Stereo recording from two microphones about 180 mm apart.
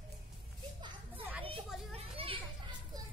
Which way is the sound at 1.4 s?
30° right (ahead or behind).